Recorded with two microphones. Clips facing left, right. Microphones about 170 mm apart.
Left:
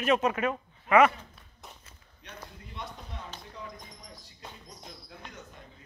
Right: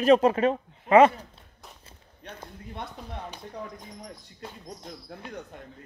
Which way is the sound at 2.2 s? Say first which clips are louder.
Right 5 dB; 55° right (ahead or behind).